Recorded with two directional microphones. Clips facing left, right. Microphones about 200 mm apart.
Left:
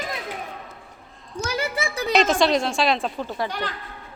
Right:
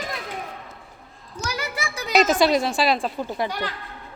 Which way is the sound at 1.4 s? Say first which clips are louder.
Left 3 dB; 30° left (ahead or behind).